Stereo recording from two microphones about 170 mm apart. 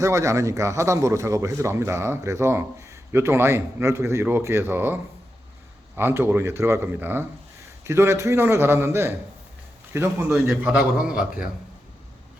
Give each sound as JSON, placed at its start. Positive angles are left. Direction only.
{"t": 0.0, "sound": "a man's voice", "side_deg": -20}
{"t": 6.0, "sound": "a man's voice", "side_deg": -15}
{"t": 10.3, "sound": "a man's voice", "side_deg": -5}